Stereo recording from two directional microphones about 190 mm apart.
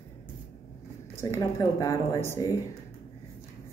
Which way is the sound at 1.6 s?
15° left (ahead or behind).